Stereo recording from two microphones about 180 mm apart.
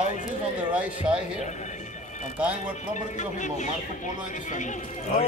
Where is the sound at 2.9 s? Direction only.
40° left (ahead or behind).